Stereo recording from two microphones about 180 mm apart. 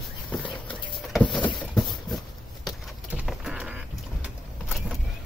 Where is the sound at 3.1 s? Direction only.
5° right (ahead or behind).